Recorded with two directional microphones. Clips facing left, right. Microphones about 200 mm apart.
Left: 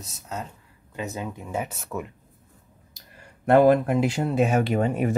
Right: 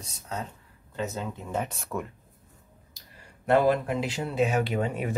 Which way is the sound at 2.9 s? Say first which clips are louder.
Left 4 dB; 50° left (ahead or behind).